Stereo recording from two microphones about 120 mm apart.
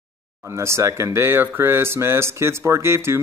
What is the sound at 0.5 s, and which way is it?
Speech, 25° right (ahead or behind).